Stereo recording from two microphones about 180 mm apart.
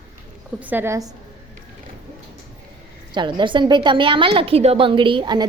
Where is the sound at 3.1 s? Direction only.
25° right (ahead or behind).